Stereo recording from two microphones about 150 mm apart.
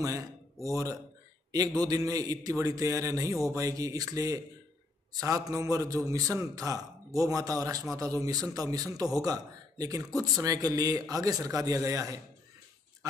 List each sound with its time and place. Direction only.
0.0 s a man's voice: 20° right (ahead or behind)